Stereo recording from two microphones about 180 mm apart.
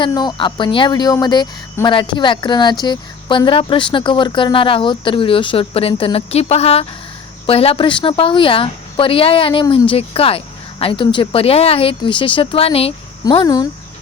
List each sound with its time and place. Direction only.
0.0 s a woman's voice: 25° left (ahead or behind)